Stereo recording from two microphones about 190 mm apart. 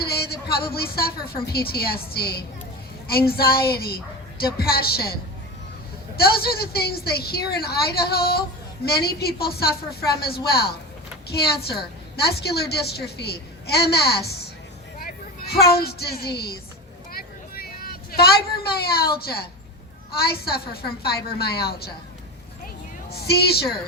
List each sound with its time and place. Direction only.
0.0 s a woman's voice: 55° left (ahead or behind)
6.1 s a woman's voice: 55° left (ahead or behind)
17.1 s vehicle: 50° left (ahead or behind)
20.1 s a woman's voice: 55° left (ahead or behind)
23.0 s a woman's voice: 55° left (ahead or behind)